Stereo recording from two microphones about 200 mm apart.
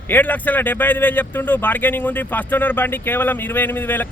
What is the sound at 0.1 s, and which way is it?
Speech, 10° left (ahead or behind).